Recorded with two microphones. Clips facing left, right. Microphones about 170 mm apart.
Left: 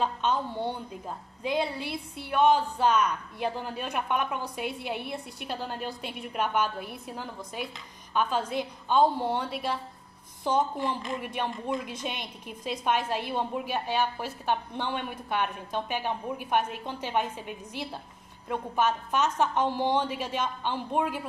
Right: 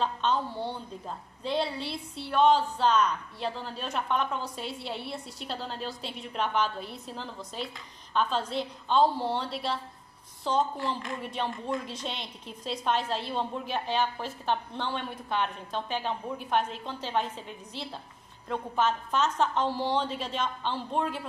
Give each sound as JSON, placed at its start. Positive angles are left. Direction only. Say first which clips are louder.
{"t": 0.0, "sound": "a woman's voice", "louder": "even", "side_deg": 10}
{"t": 5.9, "sound": "a woman's voice", "louder": "left 1 dB", "side_deg": 55}
{"t": 6.2, "sound": "a woman's voice", "louder": "left 1 dB", "side_deg": 10}